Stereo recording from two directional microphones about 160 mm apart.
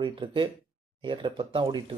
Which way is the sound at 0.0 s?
30° right (ahead or behind).